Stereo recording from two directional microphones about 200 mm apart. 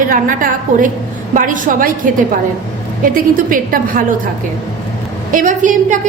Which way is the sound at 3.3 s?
45° right (ahead or behind).